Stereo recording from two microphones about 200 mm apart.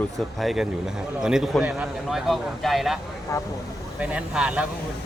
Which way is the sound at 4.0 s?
5° right (ahead or behind).